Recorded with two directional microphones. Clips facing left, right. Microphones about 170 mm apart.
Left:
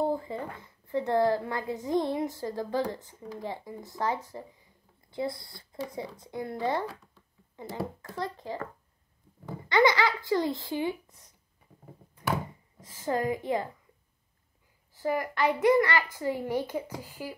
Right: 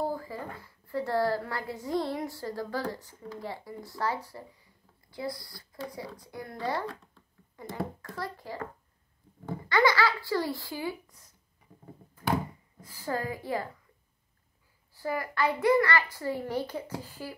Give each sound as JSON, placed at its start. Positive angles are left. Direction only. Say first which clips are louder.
{"t": 0.0, "sound": "speech", "louder": "left 4 dB", "side_deg": 25}
{"t": 9.7, "sound": "speech", "louder": "left 2 dB", "side_deg": 20}
{"t": 12.8, "sound": "speech", "louder": "left 4 dB", "side_deg": 20}
{"t": 15.0, "sound": "a child's voice", "louder": "left 2 dB", "side_deg": 15}